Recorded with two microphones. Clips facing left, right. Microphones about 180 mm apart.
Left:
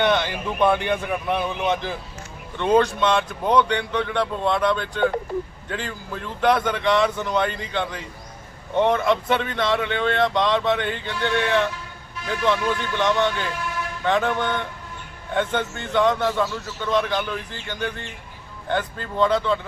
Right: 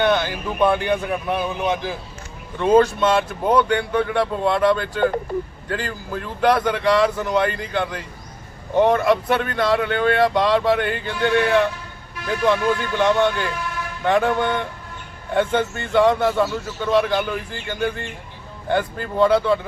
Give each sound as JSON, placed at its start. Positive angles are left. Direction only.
{"t": 0.0, "sound": "speech", "side_deg": -5}